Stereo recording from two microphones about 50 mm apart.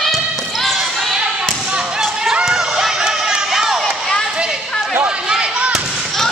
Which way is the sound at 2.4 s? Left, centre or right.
Centre.